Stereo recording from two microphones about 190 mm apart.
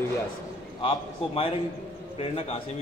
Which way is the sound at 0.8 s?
30° left (ahead or behind).